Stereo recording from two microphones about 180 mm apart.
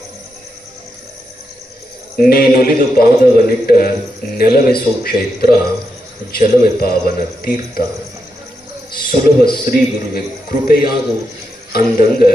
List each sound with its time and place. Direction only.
2.1 s a man's voice: 55° left (ahead or behind)
8.9 s a man's voice: 55° left (ahead or behind)